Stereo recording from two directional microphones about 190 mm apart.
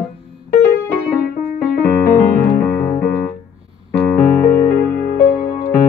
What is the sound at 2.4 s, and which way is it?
Music, 50° left (ahead or behind).